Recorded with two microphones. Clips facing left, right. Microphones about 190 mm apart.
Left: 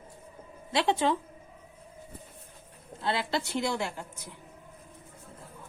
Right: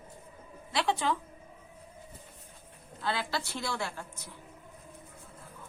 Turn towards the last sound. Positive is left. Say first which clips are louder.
# left 3 dB
turn(degrees=20)  # may be behind; listen again after turning